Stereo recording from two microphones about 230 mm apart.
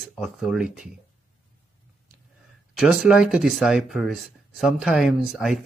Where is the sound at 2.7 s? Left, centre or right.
Centre.